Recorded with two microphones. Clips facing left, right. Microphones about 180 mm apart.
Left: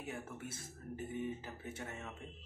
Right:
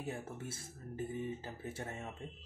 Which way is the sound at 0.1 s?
30° right (ahead or behind).